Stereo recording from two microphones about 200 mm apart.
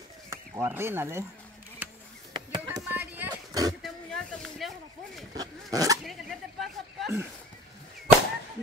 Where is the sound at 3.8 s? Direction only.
Centre (ahead or behind).